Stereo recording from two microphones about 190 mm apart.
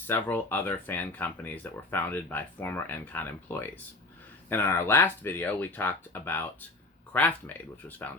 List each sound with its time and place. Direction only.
0.1 s speech: 10° left (ahead or behind)